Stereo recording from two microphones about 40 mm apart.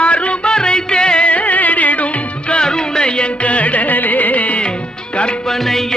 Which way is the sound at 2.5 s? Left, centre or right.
Centre.